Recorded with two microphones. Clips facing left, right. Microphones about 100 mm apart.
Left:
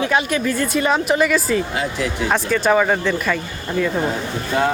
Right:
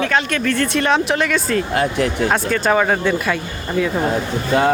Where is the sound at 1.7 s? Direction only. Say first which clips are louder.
Right 5 dB; 60° right (ahead or behind).